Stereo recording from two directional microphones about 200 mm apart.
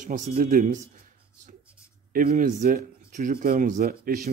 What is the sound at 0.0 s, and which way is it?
Speech, 45° right (ahead or behind).